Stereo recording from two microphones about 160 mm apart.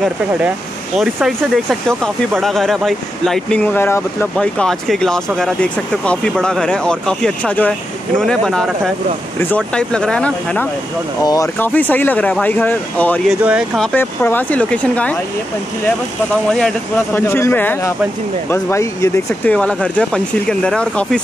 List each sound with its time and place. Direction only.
0.9 s speech: 5° right (ahead or behind)
11.2 s speech: 20° left (ahead or behind)
11.5 s speech: 10° left (ahead or behind)
13.4 s speech: 10° right (ahead or behind)
13.7 s speech: 10° left (ahead or behind)
16.4 s speech: 5° left (ahead or behind)
17.1 s speech: 15° left (ahead or behind)